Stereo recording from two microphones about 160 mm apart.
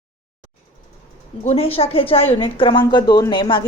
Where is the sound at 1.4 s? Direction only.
40° left (ahead or behind).